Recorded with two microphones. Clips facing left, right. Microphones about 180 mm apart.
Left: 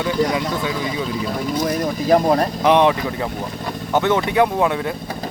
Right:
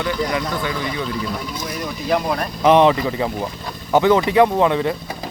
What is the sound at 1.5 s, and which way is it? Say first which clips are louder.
Speech: left 7 dB; 50° left (ahead or behind).